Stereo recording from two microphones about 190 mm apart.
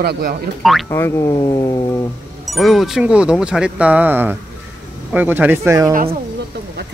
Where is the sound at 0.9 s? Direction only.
15° left (ahead or behind).